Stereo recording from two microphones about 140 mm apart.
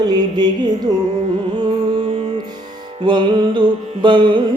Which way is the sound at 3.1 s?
35° right (ahead or behind).